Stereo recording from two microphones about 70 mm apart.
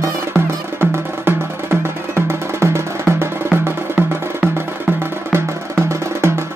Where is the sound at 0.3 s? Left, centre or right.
Right.